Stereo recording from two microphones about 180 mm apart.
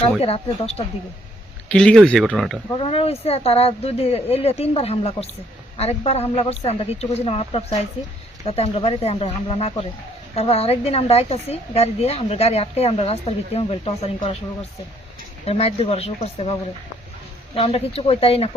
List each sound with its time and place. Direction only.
0.0 s a woman's voice: 35° left (ahead or behind)
1.7 s speech: 5° left (ahead or behind)
2.7 s a woman's voice: 30° left (ahead or behind)
15.4 s a woman's voice: 35° left (ahead or behind)